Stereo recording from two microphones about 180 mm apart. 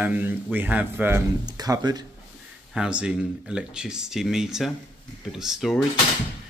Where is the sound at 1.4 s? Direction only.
20° right (ahead or behind).